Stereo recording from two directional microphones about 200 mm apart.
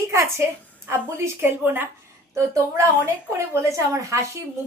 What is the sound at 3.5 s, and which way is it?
Speech, 15° right (ahead or behind).